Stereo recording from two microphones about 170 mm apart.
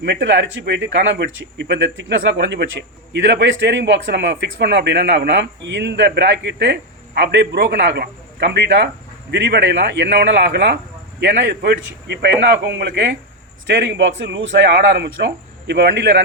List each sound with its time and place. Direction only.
0.0 s a man's voice: 90° right